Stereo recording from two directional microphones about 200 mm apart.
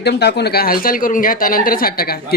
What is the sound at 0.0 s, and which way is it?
A man's voice, 55° left (ahead or behind).